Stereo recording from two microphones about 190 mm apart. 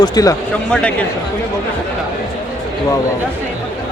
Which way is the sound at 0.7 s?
5° left (ahead or behind).